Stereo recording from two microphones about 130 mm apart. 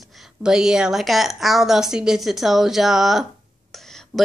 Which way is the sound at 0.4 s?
5° right (ahead or behind).